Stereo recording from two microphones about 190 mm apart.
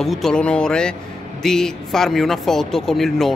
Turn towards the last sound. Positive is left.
turn(degrees=0)  # may be behind; listen again after turning